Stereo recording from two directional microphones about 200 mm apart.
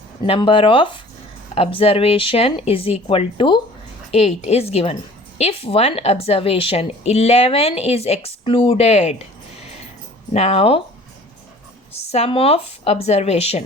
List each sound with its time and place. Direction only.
0.3 s a woman's voice: 25° left (ahead or behind)
10.3 s speech: 30° left (ahead or behind)
12.1 s a woman's voice: 30° left (ahead or behind)